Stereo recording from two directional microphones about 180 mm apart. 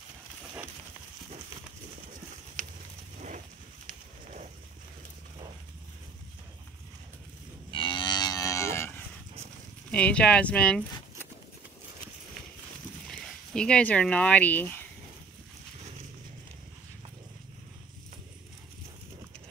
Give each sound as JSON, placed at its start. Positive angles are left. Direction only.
{"t": 2.6, "sound": "a sound", "side_deg": -45}
{"t": 7.7, "sound": "livestock", "side_deg": 25}
{"t": 9.8, "sound": "speech", "side_deg": 5}
{"t": 13.1, "sound": "speech", "side_deg": 5}